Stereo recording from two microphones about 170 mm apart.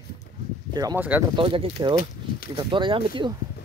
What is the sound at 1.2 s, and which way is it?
Speech, 30° right (ahead or behind).